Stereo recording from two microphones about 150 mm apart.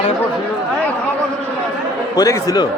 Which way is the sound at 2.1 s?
25° left (ahead or behind).